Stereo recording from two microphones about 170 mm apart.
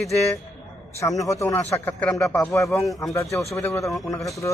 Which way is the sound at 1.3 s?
15° left (ahead or behind).